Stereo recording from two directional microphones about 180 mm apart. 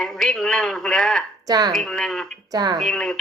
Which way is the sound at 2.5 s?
20° right (ahead or behind).